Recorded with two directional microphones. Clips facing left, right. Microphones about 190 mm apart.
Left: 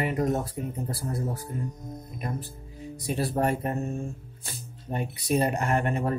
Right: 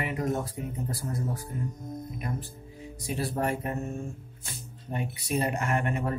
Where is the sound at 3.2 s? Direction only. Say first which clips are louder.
Left 3 dB; 35° left (ahead or behind).